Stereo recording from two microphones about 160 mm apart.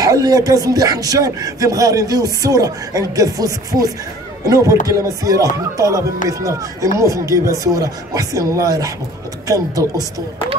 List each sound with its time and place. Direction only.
0.0 s speech: 20° right (ahead or behind)